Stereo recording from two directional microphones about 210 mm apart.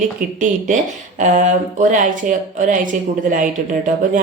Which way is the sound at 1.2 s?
35° right (ahead or behind).